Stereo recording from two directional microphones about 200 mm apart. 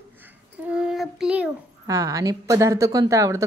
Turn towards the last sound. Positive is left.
turn(degrees=-15)  # may be behind; listen again after turning